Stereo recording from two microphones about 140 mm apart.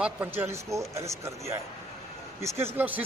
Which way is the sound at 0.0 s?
15° right (ahead or behind).